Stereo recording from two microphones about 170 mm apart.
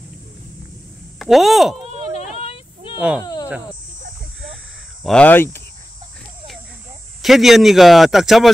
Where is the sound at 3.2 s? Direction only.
25° left (ahead or behind).